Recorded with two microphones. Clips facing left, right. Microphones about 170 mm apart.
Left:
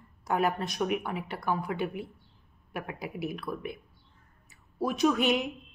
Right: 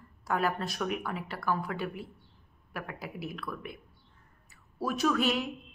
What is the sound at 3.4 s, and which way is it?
Speech, 20° left (ahead or behind).